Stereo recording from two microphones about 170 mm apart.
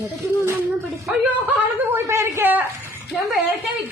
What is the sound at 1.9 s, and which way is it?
Speech, 15° right (ahead or behind).